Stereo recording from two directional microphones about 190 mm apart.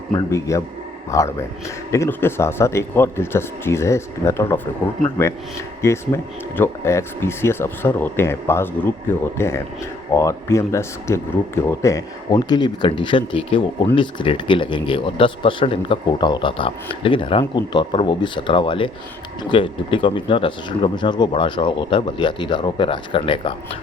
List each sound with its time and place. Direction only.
0.1 s speech: 15° left (ahead or behind)